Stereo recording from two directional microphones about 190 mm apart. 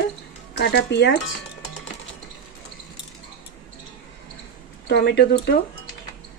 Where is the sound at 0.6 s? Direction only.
60° left (ahead or behind).